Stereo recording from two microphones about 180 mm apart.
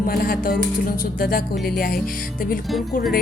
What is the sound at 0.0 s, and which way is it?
Speech, 55° left (ahead or behind).